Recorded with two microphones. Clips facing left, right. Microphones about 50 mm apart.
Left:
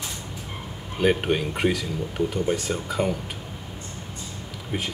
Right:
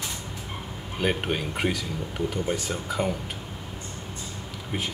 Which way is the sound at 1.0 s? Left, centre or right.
Centre.